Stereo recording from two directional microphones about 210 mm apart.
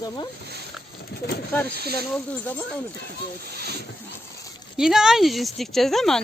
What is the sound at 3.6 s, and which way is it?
Speech, 50° right (ahead or behind).